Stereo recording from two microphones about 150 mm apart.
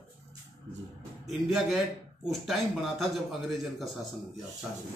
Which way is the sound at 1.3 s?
Centre (ahead or behind).